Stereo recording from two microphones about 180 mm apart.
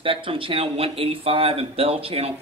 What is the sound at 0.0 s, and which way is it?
Speech, 30° right (ahead or behind).